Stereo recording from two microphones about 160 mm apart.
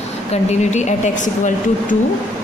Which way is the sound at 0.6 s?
45° left (ahead or behind).